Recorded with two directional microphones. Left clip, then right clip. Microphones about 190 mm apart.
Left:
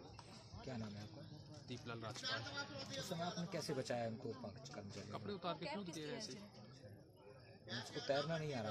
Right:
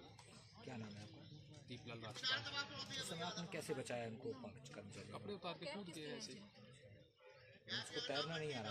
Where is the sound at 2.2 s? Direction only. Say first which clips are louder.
Right 4 dB; 55° left (ahead or behind).